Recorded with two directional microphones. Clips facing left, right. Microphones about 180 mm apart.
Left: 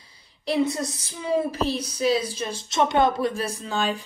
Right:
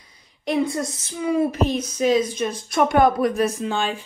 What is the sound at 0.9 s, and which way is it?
Speech, 30° left (ahead or behind).